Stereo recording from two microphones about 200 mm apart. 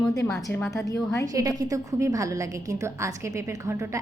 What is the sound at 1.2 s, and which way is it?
A woman's voice, 20° right (ahead or behind).